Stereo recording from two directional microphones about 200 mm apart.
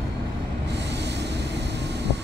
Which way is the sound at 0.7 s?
60° right (ahead or behind).